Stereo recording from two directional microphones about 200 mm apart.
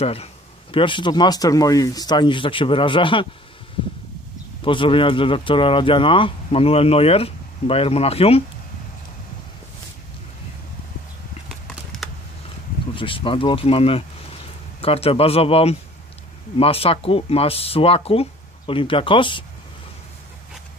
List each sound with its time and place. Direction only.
0.0 s speech: 30° left (ahead or behind)
4.6 s speech: 25° left (ahead or behind)
12.0 s a sound: centre (ahead or behind)
12.9 s speech: 25° left (ahead or behind)